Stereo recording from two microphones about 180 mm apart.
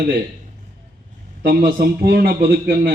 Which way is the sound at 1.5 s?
55° right (ahead or behind).